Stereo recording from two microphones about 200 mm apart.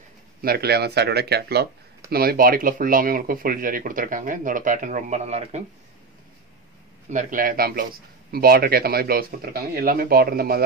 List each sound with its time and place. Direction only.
0.4 s speech: 50° right (ahead or behind); by 5.6 s 35° right (ahead or behind)
7.1 s speech: 40° right (ahead or behind)